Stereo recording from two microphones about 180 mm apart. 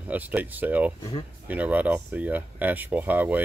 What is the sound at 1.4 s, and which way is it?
Speech, 10° right (ahead or behind).